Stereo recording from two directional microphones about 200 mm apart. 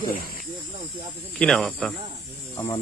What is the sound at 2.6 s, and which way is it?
Speech, 15° left (ahead or behind).